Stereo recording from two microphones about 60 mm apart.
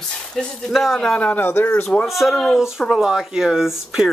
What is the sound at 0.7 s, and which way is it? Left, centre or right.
Speech, centre.